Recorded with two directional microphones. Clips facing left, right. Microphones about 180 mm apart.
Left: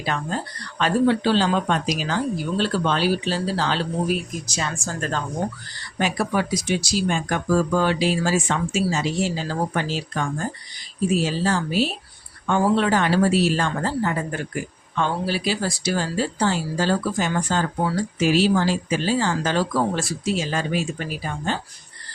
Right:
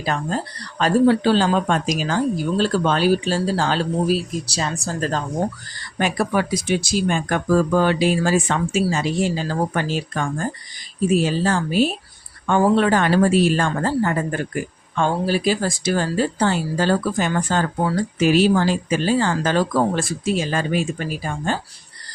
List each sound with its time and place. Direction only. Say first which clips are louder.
0.0 s speech: right 3 dB; 40° right (ahead or behind)
6.0 s speech: right 2 dB; 55° right (ahead or behind)